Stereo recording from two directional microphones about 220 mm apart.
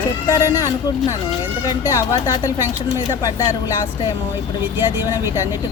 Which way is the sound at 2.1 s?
15° left (ahead or behind).